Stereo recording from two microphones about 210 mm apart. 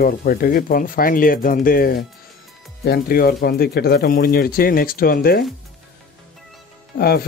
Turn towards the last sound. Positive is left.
turn(degrees=50)  # may be behind; listen again after turning